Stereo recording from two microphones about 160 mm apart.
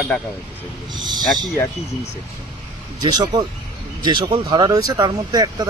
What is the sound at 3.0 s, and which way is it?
Speech, 25° right (ahead or behind).